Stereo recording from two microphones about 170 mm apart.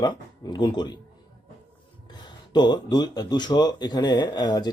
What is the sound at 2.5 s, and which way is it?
Speech, 25° left (ahead or behind).